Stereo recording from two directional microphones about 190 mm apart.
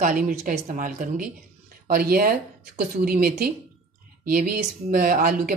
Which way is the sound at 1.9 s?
50° right (ahead or behind).